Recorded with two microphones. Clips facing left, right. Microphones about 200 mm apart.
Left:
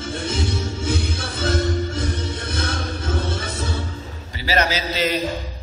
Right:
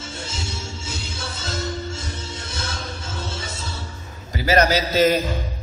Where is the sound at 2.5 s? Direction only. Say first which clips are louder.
Left 5 dB; 60° left (ahead or behind).